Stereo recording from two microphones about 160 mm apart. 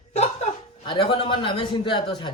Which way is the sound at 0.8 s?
30° left (ahead or behind).